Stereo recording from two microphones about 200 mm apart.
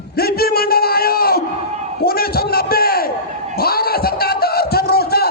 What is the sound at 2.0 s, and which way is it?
A man's voice, 50° left (ahead or behind).